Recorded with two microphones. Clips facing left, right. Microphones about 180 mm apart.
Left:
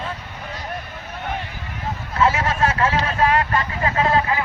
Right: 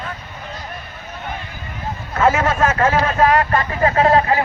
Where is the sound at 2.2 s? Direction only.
45° right (ahead or behind).